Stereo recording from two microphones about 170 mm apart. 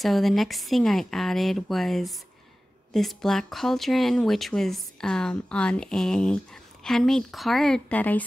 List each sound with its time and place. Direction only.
0.0 s speech: centre (ahead or behind)